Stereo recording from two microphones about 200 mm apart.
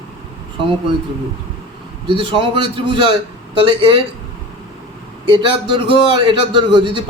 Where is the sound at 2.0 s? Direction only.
25° right (ahead or behind).